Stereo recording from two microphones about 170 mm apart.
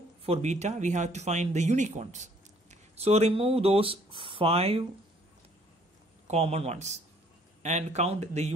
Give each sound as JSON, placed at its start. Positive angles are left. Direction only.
{"t": 0.2, "sound": "speech", "side_deg": -40}
{"t": 6.2, "sound": "speech", "side_deg": -40}